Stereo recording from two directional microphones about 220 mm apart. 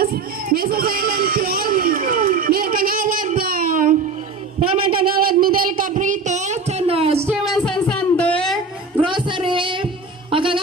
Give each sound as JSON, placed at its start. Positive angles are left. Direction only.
{"t": 0.0, "sound": "music", "side_deg": -45}
{"t": 4.6, "sound": "a sound", "side_deg": -25}
{"t": 4.9, "sound": "a sound", "side_deg": -45}
{"t": 7.4, "sound": "music", "side_deg": 0}
{"t": 9.0, "sound": "child singing", "side_deg": -20}
{"t": 10.3, "sound": "music", "side_deg": -25}